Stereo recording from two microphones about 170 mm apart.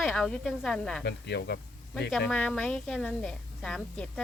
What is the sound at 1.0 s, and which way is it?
Speech, 80° left.